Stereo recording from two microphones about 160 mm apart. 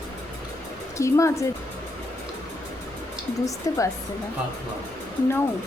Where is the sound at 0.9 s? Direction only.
20° left (ahead or behind).